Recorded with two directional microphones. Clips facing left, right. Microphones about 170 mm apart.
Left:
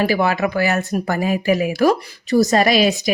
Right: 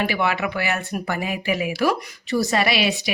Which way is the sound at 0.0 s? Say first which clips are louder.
Left 5 dB; 40° left (ahead or behind).